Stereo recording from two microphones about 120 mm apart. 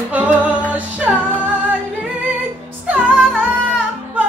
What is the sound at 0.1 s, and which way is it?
Music, 15° right (ahead or behind).